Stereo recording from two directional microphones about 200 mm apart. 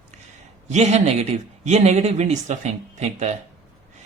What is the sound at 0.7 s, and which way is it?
Speech, 35° right (ahead or behind).